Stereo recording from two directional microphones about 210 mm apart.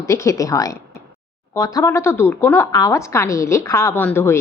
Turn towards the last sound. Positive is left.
turn(degrees=10)  # may be behind; listen again after turning